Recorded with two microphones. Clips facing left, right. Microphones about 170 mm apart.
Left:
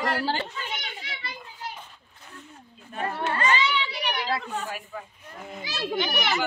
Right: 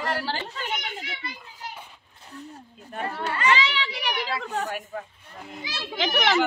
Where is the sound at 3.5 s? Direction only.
85° right.